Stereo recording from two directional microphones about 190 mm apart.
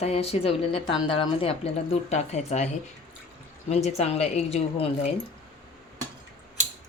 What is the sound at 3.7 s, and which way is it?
Speech, 35° left (ahead or behind).